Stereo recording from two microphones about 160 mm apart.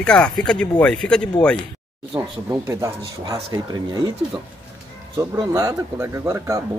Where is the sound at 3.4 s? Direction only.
30° right (ahead or behind).